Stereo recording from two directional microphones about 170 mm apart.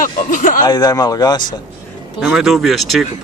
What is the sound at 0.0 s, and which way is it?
Speech, 50° left (ahead or behind).